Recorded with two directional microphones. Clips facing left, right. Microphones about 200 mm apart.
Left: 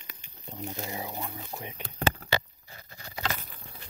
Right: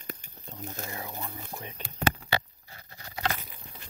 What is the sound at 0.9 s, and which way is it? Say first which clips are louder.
Speech: left 2 dB; 20° left (ahead or behind).